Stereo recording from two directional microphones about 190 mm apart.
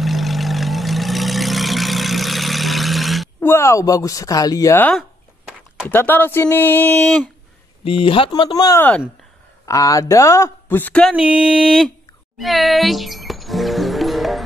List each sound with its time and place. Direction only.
0.0 s vehicle: centre (ahead or behind)
3.3 s speech: 10° left (ahead or behind)
7.8 s speech: 30° left (ahead or behind); by 11.9 s centre (ahead or behind)
12.4 s music: centre (ahead or behind)